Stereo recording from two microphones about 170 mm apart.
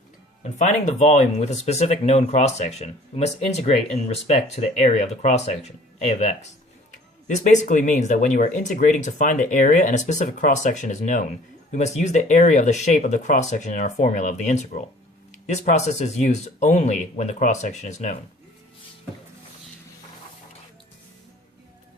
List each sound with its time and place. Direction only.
0.6 s speech: 45° left (ahead or behind)